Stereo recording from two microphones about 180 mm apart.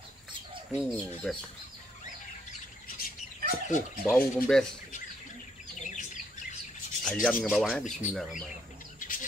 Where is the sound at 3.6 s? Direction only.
45° left (ahead or behind).